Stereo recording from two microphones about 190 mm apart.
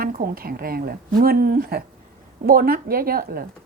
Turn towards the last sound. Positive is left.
turn(degrees=-50)  # may be behind; listen again after turning